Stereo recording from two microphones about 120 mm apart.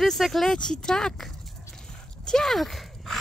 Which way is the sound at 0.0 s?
Centre (ahead or behind).